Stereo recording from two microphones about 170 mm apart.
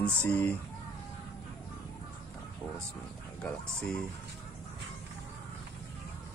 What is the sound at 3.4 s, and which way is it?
Music, 5° left (ahead or behind).